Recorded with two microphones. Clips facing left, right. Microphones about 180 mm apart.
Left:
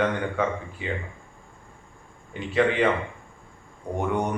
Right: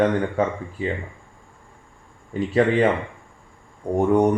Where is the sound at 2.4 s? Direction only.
40° right (ahead or behind).